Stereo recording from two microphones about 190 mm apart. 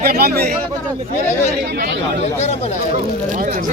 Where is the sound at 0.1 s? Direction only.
55° right (ahead or behind).